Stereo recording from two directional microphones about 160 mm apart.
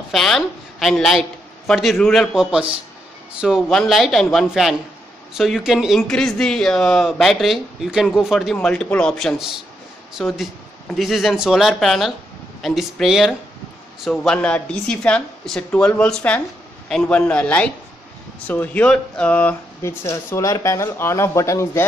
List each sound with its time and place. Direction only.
0.1 s a woman's voice: centre (ahead or behind); by 21.8 s 20° left (ahead or behind)